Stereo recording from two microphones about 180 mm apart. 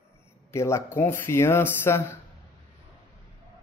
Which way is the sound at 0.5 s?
15° left (ahead or behind).